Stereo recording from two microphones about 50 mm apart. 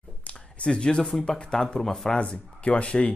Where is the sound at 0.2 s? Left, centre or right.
Left.